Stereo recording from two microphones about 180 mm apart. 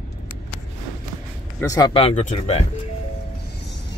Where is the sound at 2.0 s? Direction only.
35° left (ahead or behind).